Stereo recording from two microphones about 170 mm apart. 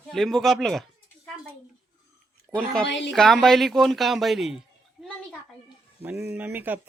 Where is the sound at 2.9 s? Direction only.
90° left.